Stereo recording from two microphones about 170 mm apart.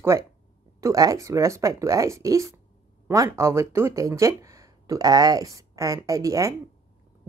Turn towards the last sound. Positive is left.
turn(degrees=-20)  # may be behind; listen again after turning